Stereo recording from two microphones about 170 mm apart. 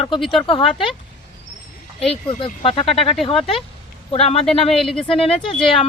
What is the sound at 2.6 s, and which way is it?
Speech, 35° left (ahead or behind).